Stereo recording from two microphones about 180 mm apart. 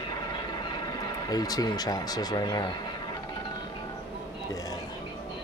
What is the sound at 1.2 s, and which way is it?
Speech, 20° left (ahead or behind).